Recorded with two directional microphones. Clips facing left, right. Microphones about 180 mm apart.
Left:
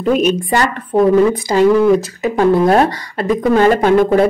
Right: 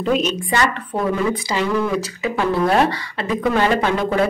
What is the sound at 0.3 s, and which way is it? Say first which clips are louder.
Speech: left 5 dB; 45° left (ahead or behind).